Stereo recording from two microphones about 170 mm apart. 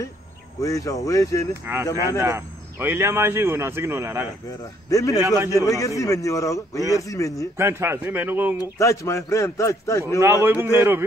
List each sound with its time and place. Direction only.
0.6 s a man's voice: 20° left (ahead or behind)
2.0 s speech: 15° right (ahead or behind)
4.5 s a man's voice: 20° left (ahead or behind)
7.5 s speech: 15° right (ahead or behind)
8.7 s a man's voice: 20° left (ahead or behind)
10.2 s speech: 15° right (ahead or behind)